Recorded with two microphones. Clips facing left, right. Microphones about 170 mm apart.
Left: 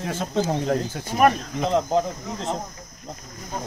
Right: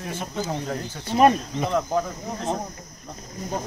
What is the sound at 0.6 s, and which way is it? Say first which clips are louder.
Speech: left 6 dB; 45° left (ahead or behind).